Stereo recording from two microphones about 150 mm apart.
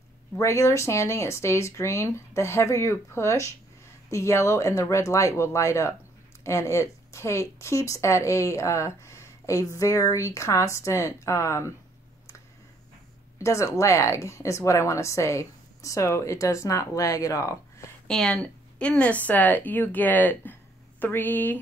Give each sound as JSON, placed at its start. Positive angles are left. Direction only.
{"t": 0.4, "sound": "speech", "side_deg": 20}
{"t": 13.4, "sound": "speech", "side_deg": 20}
{"t": 18.0, "sound": "speech", "side_deg": 5}